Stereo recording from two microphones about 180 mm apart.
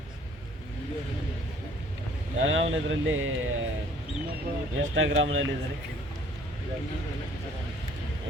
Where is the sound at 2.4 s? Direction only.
90° right.